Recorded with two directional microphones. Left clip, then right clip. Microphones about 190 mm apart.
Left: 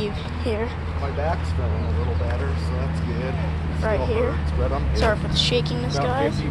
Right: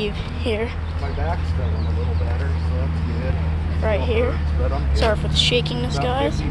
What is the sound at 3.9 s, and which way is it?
Speech, 10° right (ahead or behind).